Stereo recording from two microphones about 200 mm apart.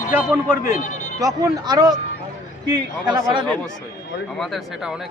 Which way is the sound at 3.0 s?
25° right (ahead or behind).